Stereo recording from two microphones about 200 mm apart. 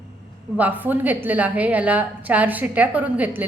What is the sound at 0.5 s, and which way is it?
A woman's voice, 10° right (ahead or behind).